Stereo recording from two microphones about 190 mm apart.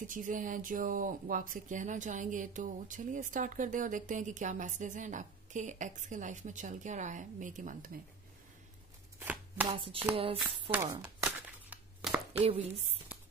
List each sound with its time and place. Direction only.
0.0 s speech: 45° right (ahead or behind)
9.2 s chopping: 5° right (ahead or behind)
9.7 s a sound: 25° right (ahead or behind)
10.4 s speech: 10° right (ahead or behind)
11.0 s crumpling: 5° right (ahead or behind)